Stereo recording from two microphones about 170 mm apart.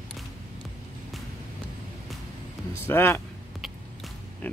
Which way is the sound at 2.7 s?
15° left (ahead or behind).